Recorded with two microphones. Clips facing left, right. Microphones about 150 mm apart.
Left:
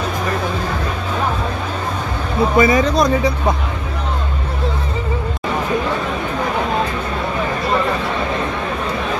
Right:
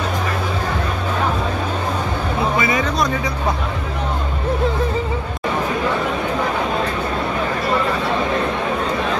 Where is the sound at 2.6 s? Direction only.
40° left (ahead or behind).